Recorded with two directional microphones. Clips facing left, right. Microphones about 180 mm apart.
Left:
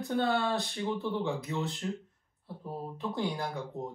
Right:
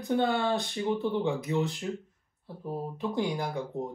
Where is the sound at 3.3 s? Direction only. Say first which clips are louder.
Right 4 dB; 15° right (ahead or behind).